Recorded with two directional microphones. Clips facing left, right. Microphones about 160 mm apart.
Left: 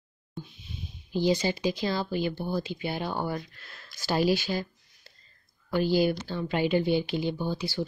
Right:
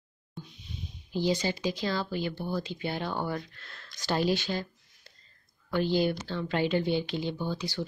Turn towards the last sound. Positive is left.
turn(degrees=10)  # may be behind; listen again after turning